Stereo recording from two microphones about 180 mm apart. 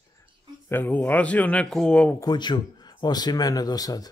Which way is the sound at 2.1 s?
20° left (ahead or behind).